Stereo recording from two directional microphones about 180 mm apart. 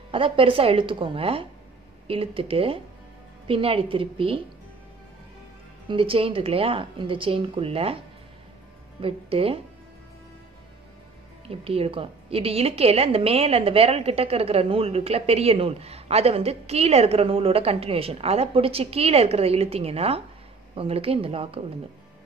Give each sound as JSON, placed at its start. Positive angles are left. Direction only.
{"t": 0.1, "sound": "a woman's voice", "side_deg": -30}
{"t": 5.9, "sound": "a woman's voice", "side_deg": -30}
{"t": 9.0, "sound": "a woman's voice", "side_deg": -30}
{"t": 11.4, "sound": "a woman's voice", "side_deg": -30}